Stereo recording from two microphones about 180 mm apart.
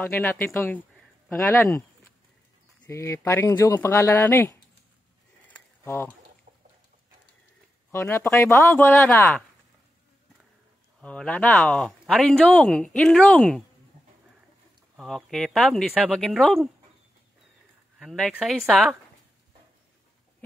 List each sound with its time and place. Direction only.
0.0 s speech: 15° left (ahead or behind)
2.9 s speech: 15° left (ahead or behind)
5.5 s a sound: 10° left (ahead or behind)
7.9 s speech: 15° left (ahead or behind)
11.0 s speech: 5° left (ahead or behind)
15.0 s speech: centre (ahead or behind)
17.9 s speech: centre (ahead or behind)